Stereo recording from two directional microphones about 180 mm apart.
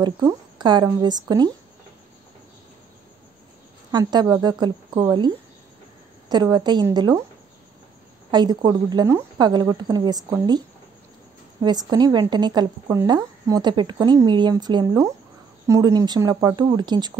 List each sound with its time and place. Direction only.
0.0 s a woman's voice: 25° right (ahead or behind)
3.9 s a woman's voice: 25° right (ahead or behind)
8.3 s a woman's voice: 25° right (ahead or behind)
11.9 s a woman's voice: 25° right (ahead or behind)